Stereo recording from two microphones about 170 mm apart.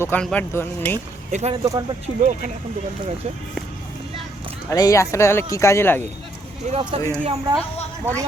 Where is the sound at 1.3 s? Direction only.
40° right (ahead or behind).